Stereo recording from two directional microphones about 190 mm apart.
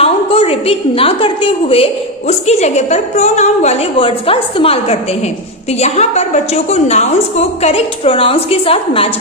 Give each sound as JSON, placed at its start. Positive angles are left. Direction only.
{"t": 0.0, "sound": "a woman's voice", "side_deg": 30}